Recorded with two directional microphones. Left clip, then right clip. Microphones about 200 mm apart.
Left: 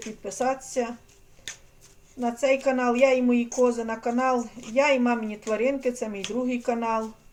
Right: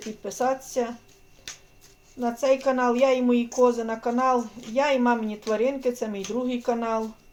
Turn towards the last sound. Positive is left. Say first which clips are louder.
# even
turn(degrees=-20)  # may be behind; listen again after turning